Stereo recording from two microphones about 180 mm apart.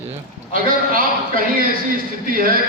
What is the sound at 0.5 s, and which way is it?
Speech, 55° right (ahead or behind).